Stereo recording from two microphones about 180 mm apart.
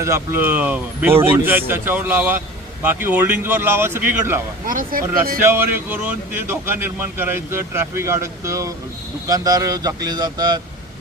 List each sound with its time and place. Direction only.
0.0 s speech: 15° right (ahead or behind)
4.6 s speech: 50° right (ahead or behind)
5.4 s speech: 15° right (ahead or behind)